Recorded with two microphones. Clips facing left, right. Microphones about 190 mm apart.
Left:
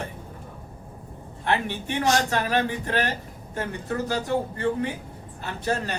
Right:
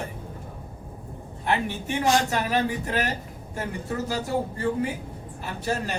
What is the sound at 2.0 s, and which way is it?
Speech, 40° left (ahead or behind).